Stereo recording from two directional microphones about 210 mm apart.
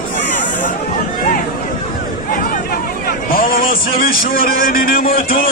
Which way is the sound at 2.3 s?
45° left (ahead or behind).